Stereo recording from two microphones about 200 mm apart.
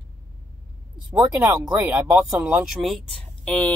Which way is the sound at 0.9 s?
20° right (ahead or behind).